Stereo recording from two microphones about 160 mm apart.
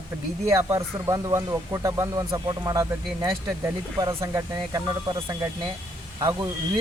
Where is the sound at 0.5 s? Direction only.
20° right (ahead or behind).